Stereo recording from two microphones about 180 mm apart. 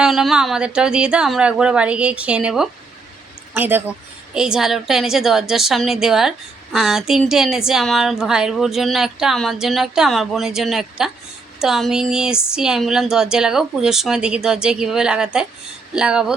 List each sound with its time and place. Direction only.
0.0 s speech: centre (ahead or behind)